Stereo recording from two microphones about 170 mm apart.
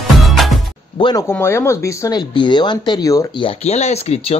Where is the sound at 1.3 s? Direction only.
15° left (ahead or behind).